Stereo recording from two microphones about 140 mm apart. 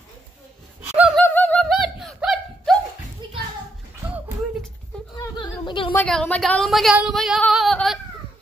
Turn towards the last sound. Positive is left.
turn(degrees=0)  # may be behind; listen again after turning